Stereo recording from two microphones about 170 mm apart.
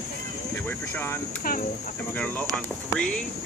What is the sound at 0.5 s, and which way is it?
Speech, 15° left (ahead or behind).